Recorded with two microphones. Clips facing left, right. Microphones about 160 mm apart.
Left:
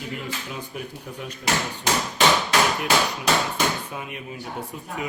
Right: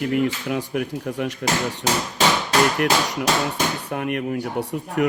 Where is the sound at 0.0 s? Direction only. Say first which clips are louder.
Right 11 dB; 65° right (ahead or behind).